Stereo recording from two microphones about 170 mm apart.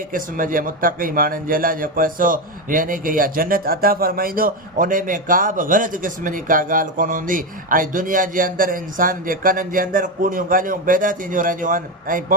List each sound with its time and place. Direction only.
0.1 s a man's voice: 55° right (ahead or behind)